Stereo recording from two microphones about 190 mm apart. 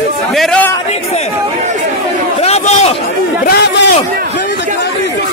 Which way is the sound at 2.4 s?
35° left (ahead or behind).